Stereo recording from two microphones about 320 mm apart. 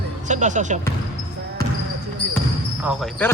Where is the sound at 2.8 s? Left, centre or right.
Centre.